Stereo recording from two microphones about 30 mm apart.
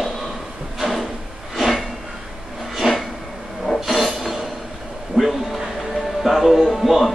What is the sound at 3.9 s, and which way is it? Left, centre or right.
Train, centre.